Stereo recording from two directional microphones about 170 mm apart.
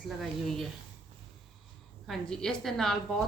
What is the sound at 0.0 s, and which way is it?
Speech, centre (ahead or behind).